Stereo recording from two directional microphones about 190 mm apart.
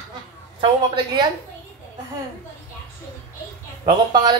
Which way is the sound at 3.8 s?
25° right (ahead or behind).